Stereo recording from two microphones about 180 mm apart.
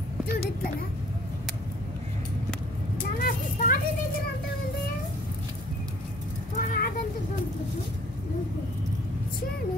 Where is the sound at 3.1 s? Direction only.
50° left (ahead or behind).